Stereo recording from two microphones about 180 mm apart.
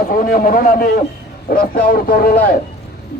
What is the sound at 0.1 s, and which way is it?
A man's voice, 50° left (ahead or behind).